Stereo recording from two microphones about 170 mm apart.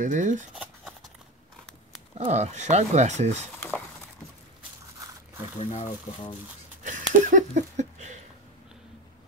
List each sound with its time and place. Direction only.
0.0 s speech: 50° right (ahead or behind)
2.1 s speech: 40° right (ahead or behind)
5.6 s speech: 40° left (ahead or behind)
6.8 s a sound: 50° right (ahead or behind)